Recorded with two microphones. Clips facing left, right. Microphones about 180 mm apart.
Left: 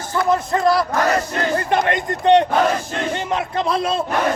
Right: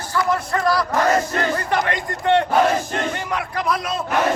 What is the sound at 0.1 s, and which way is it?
Speech, 25° left (ahead or behind).